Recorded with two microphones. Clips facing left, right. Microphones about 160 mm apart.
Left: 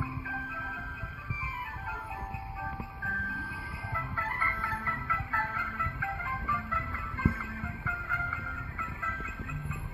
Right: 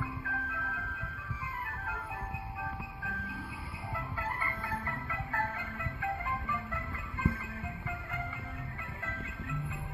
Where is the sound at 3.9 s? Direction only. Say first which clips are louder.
Even; 15° right (ahead or behind).